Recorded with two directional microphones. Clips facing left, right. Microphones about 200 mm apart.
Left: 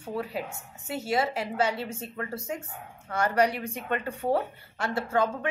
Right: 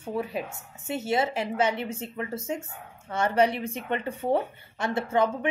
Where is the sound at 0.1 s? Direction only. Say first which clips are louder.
Right 2 dB; 20° right (ahead or behind).